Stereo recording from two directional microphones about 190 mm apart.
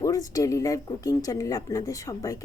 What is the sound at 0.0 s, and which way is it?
A woman's voice, 15° left (ahead or behind).